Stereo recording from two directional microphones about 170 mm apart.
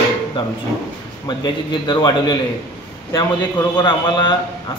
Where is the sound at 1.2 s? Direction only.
25° left (ahead or behind).